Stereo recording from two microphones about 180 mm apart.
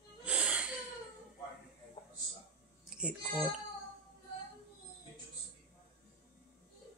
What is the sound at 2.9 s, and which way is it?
Music, 5° right (ahead or behind).